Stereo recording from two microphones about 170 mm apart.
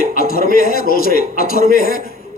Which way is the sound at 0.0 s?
60° left (ahead or behind).